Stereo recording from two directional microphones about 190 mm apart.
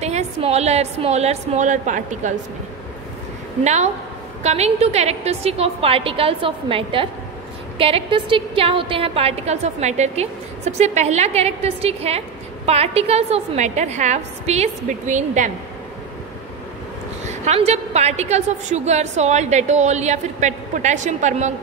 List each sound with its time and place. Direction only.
0.0 s a woman's voice: 35° right (ahead or behind)
3.6 s a woman's voice: 35° right (ahead or behind)
17.3 s a woman's voice: 35° right (ahead or behind)